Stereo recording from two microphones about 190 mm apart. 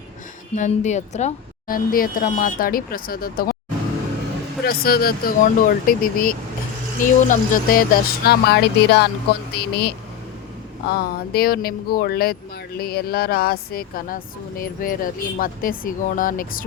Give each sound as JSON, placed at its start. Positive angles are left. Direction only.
{"t": 0.5, "sound": "speech", "side_deg": 40}
{"t": 4.6, "sound": "speech", "side_deg": 55}